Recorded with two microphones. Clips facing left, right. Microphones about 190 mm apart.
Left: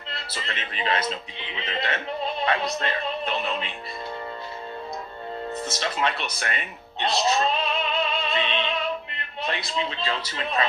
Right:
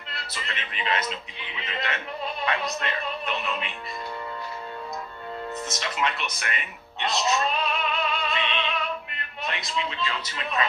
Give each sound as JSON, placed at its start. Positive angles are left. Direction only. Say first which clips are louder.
{"t": 0.3, "sound": "a man's voice", "louder": "left 2 dB", "side_deg": 35}
{"t": 5.6, "sound": "a man's voice", "louder": "left 3 dB", "side_deg": 35}
{"t": 7.0, "sound": "music", "louder": "left 2 dB", "side_deg": 30}
{"t": 9.5, "sound": "a man's voice", "louder": "left 2 dB", "side_deg": 30}